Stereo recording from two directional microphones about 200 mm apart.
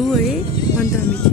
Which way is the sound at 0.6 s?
15° left (ahead or behind).